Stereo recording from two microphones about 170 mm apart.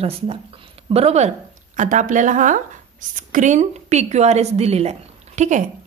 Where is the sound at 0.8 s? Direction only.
35° right (ahead or behind).